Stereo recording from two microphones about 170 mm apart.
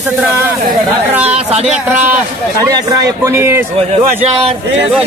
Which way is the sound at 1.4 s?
35° right (ahead or behind).